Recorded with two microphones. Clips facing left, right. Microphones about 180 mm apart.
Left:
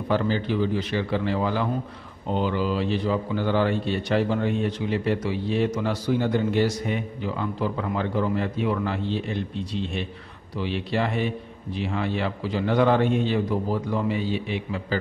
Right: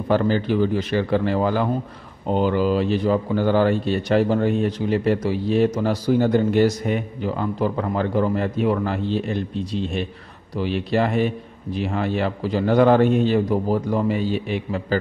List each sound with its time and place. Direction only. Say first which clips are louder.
0.1 s a man's voice: right 5 dB; 45° right (ahead or behind)